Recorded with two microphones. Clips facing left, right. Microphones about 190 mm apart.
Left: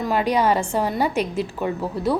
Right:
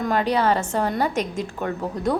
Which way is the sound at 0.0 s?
10° left (ahead or behind).